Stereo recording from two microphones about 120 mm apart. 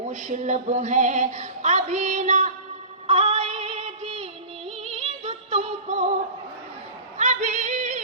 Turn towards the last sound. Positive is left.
turn(degrees=-90)